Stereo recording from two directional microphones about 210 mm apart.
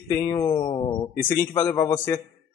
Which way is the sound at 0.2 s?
20° left (ahead or behind).